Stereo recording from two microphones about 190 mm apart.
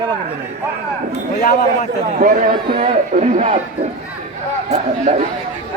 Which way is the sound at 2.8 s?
35° right (ahead or behind).